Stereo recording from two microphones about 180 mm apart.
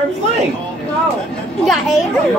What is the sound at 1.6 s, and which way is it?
Speech, centre (ahead or behind).